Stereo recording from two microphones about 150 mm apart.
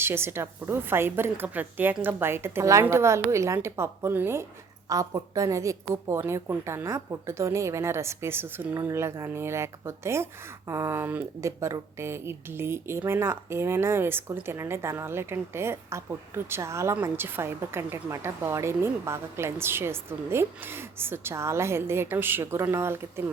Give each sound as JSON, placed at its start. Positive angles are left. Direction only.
{"t": 0.0, "sound": "a woman's voice", "side_deg": -15}